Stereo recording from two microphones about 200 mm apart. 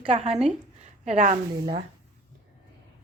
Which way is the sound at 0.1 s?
30° right (ahead or behind).